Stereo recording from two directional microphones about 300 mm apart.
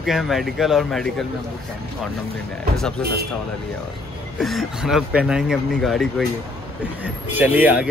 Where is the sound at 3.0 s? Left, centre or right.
Right.